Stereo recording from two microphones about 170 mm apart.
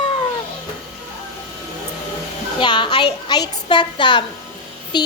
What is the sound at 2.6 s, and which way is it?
A woman's voice, 30° left (ahead or behind).